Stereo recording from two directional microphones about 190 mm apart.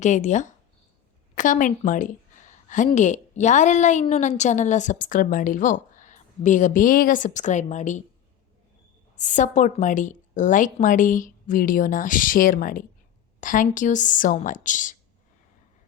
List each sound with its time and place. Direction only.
0.0 s a woman's voice: 40° left (ahead or behind)
9.1 s a woman's voice: 40° left (ahead or behind)